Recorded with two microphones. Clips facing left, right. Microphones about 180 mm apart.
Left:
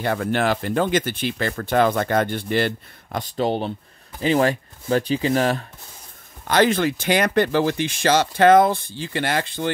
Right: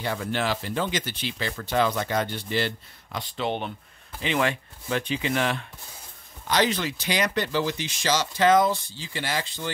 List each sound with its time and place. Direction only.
0.0 s speech: 55° left (ahead or behind); by 5.7 s 40° left (ahead or behind)
6.4 s speech: 55° left (ahead or behind)